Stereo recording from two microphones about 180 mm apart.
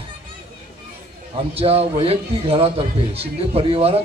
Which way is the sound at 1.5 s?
35° right (ahead or behind).